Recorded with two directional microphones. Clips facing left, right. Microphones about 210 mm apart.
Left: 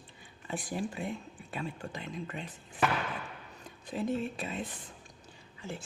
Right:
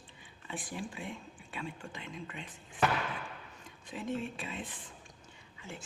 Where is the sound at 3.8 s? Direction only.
40° left (ahead or behind).